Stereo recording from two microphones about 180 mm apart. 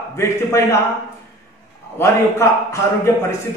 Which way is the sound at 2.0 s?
15° left (ahead or behind).